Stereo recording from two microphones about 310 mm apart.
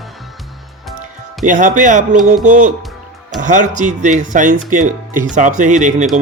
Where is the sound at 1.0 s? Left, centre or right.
Right.